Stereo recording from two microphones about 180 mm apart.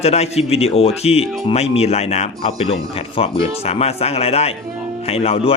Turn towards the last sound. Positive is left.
turn(degrees=30)  # may be behind; listen again after turning